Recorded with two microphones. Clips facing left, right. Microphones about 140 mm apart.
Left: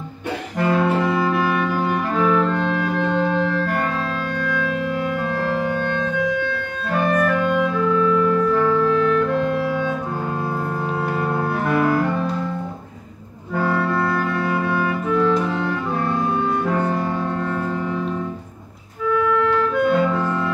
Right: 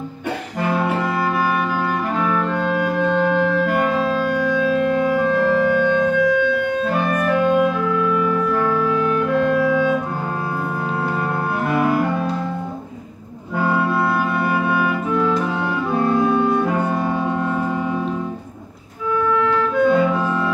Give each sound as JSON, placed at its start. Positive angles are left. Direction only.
{"t": 0.7, "sound": "music", "side_deg": -10}
{"t": 6.9, "sound": "clarinet", "side_deg": -10}
{"t": 11.6, "sound": "clarinet", "side_deg": -10}
{"t": 13.6, "sound": "music", "side_deg": -10}
{"t": 14.7, "sound": "clarinet", "side_deg": -10}
{"t": 16.7, "sound": "music", "side_deg": -10}
{"t": 19.9, "sound": "clarinet", "side_deg": -10}